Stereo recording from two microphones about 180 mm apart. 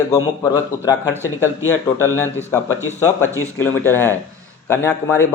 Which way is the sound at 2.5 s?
15° left (ahead or behind).